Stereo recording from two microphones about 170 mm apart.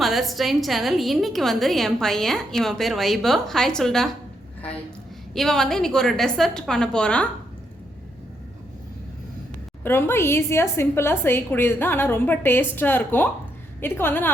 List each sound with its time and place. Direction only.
0.0 s a woman's voice: centre (ahead or behind)
5.3 s a woman's voice: centre (ahead or behind)
9.8 s a woman's voice: 15° left (ahead or behind)